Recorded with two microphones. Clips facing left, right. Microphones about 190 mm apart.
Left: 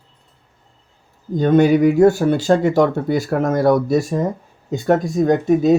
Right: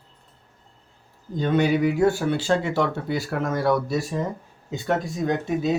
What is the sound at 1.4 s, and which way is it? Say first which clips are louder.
Speech: left 8 dB; 45° left (ahead or behind).